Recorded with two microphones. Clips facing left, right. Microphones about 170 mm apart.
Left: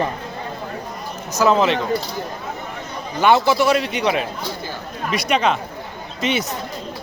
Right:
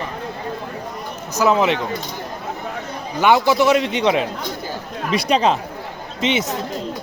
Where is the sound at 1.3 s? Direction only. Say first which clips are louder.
Even; 15° right (ahead or behind).